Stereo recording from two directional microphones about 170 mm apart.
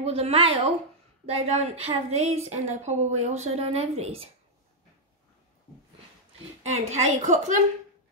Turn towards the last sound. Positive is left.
turn(degrees=-45)  # may be behind; listen again after turning